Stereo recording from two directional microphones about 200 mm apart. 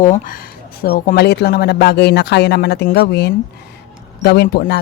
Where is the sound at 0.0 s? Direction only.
40° left (ahead or behind).